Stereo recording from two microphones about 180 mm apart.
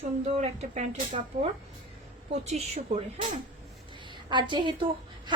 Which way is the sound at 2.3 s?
40° right (ahead or behind).